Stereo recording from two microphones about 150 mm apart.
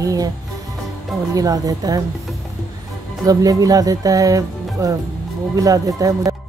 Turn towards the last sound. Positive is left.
turn(degrees=-25)  # may be behind; listen again after turning